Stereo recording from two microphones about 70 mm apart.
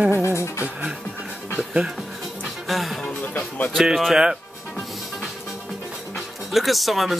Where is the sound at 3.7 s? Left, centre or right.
Centre.